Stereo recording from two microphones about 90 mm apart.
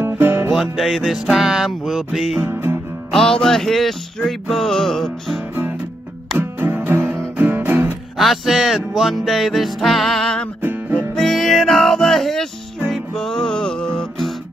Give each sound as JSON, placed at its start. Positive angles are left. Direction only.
{"t": 0.0, "sound": "music", "side_deg": -25}
{"t": 0.5, "sound": "music", "side_deg": 0}
{"t": 2.4, "sound": "music", "side_deg": -25}
{"t": 3.1, "sound": "music", "side_deg": 5}
{"t": 5.5, "sound": "music", "side_deg": -20}
{"t": 8.2, "sound": "music", "side_deg": 0}
{"t": 10.6, "sound": "music", "side_deg": -20}
{"t": 11.1, "sound": "music", "side_deg": 5}